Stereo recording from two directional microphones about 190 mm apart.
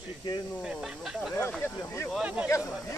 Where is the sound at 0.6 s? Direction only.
5° right (ahead or behind).